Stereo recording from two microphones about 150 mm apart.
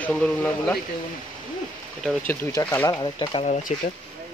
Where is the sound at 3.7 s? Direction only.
50° left (ahead or behind).